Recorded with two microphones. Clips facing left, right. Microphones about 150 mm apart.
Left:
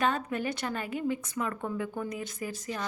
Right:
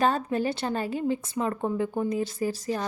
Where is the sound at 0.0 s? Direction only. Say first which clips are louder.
Right 5 dB; 35° right (ahead or behind).